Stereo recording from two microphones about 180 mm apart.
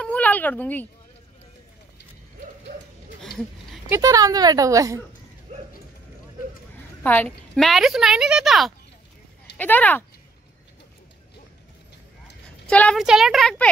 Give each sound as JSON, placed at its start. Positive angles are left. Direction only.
{"t": 0.0, "sound": "a sound", "side_deg": 10}
{"t": 3.2, "sound": "a sound", "side_deg": 0}
{"t": 3.9, "sound": "a woman's voice", "side_deg": -20}
{"t": 5.5, "sound": "mechanisms", "side_deg": -40}
{"t": 7.0, "sound": "a woman's voice", "side_deg": 10}
{"t": 12.6, "sound": "a woman's voice", "side_deg": 5}